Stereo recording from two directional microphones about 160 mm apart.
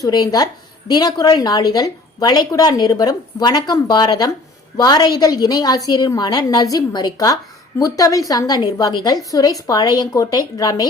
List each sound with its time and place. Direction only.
0.0 s a woman's voice: 25° left (ahead or behind)